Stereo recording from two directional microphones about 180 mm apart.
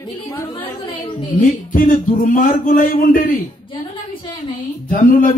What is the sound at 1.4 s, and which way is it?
Speech, 50° left (ahead or behind).